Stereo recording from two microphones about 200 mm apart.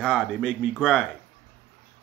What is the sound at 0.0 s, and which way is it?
Speech, 5° left (ahead or behind).